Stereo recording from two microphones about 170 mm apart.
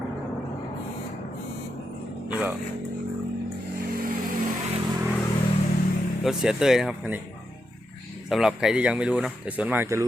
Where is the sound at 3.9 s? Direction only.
60° right (ahead or behind).